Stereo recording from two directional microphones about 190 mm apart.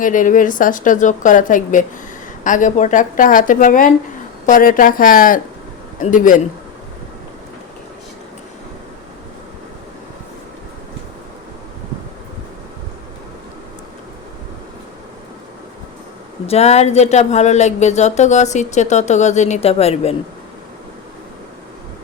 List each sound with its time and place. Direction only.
0.0 s speech: 45° left (ahead or behind)
16.5 s speech: 35° left (ahead or behind)